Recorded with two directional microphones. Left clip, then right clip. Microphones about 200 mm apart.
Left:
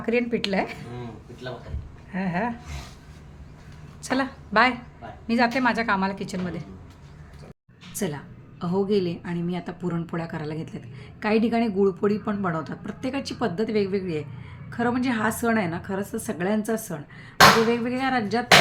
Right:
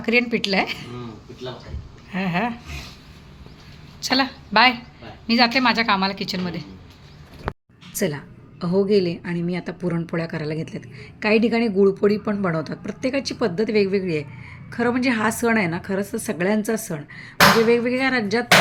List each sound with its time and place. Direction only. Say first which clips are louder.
0.0 s a woman's voice: right 4 dB; centre (ahead or behind)
2.1 s a woman's voice: right 4 dB; centre (ahead or behind)
4.1 s a woman's voice: right 4 dB; centre (ahead or behind)
7.9 s speech: right 6 dB; 10° right (ahead or behind)